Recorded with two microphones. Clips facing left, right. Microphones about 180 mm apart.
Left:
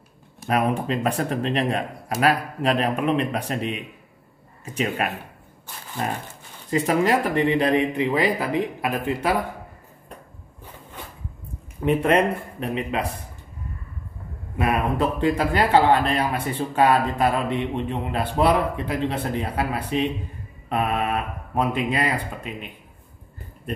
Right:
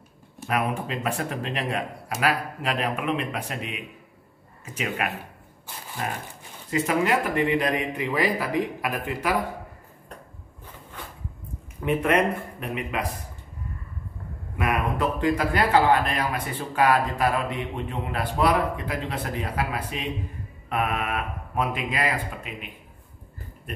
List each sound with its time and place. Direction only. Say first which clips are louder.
0.5 s speech: left 5 dB; 35° left (ahead or behind)
6.7 s speech: left 3 dB; 35° left (ahead or behind)
11.8 s speech: left 3 dB; 30° left (ahead or behind)
14.6 s speech: left 3 dB; 30° left (ahead or behind)